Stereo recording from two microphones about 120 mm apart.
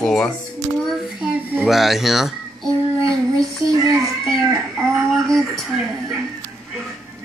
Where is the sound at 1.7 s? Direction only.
Centre (ahead or behind).